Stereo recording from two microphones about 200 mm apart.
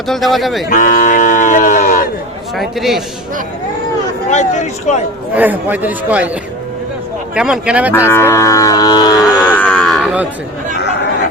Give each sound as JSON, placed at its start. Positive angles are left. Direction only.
{"t": 0.1, "sound": "speech", "side_deg": 0}
{"t": 0.7, "sound": "speech", "side_deg": 40}
{"t": 2.6, "sound": "speech", "side_deg": 0}
{"t": 4.3, "sound": "speech", "side_deg": 35}
{"t": 5.3, "sound": "a man's voice", "side_deg": -10}
{"t": 7.3, "sound": "speech", "side_deg": -5}
{"t": 7.9, "sound": "cattle", "side_deg": 15}
{"t": 9.6, "sound": "livestock", "side_deg": 5}